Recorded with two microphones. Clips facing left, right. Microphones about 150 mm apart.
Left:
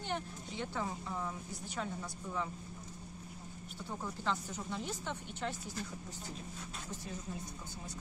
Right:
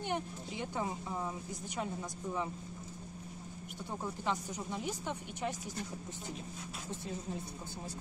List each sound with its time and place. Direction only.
0.0 s speech: 15° right (ahead or behind)
4.0 s speech: 15° right (ahead or behind)